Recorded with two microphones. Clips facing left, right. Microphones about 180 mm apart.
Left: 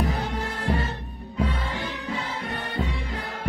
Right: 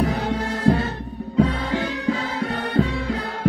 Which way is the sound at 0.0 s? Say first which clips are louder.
Right 5 dB; 80° right.